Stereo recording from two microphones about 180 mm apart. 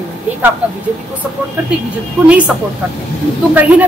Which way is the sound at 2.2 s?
5° right (ahead or behind).